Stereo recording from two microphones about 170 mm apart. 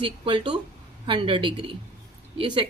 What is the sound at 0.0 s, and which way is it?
A woman's voice, 30° right (ahead or behind).